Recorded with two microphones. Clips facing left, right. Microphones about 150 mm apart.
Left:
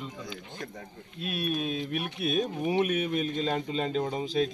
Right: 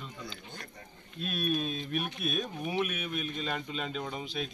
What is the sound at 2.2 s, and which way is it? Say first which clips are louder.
A man's voice: left 6 dB; 25° left (ahead or behind).